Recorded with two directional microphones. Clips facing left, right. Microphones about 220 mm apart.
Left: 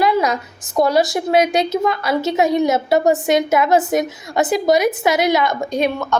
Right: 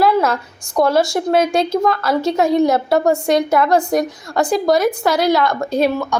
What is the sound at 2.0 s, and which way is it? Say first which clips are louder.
A woman's voice: right 1 dB; 5° left (ahead or behind).